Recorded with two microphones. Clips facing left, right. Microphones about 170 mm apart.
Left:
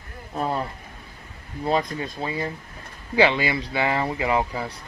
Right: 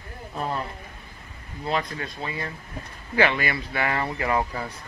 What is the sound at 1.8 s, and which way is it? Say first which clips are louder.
Speech: left 3 dB; 25° left (ahead or behind).